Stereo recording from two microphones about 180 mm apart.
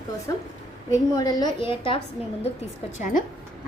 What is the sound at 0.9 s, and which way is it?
A woman's voice, 20° left (ahead or behind).